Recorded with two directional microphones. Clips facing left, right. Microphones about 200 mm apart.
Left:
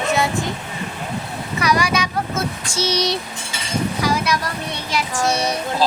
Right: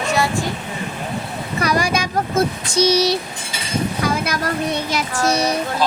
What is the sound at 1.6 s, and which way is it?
Vehicle, 55° right (ahead or behind).